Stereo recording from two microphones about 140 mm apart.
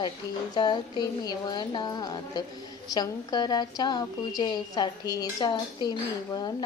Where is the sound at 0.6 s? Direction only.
30° left (ahead or behind).